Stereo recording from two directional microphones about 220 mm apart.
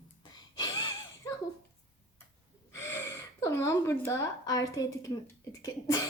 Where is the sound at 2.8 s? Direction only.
10° left (ahead or behind).